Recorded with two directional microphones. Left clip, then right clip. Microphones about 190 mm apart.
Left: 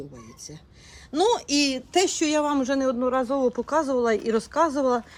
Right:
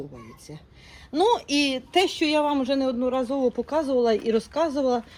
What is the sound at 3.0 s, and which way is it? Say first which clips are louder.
Speech: left 1 dB; 25° left (ahead or behind).